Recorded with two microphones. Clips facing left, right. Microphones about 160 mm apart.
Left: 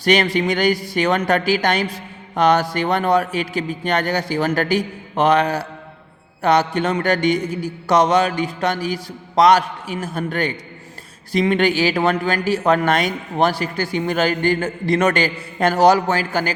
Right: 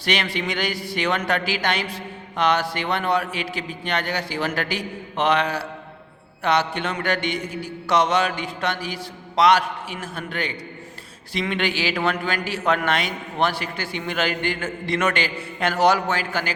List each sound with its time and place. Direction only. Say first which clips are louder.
0.0 s a man's voice: left 8 dB; 45° left (ahead or behind)